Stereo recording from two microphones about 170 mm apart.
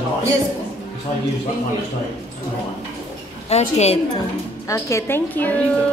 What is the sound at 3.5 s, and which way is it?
Speech, 40° left (ahead or behind).